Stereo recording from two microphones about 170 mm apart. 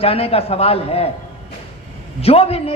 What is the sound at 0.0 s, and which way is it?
A woman's voice, 35° left (ahead or behind).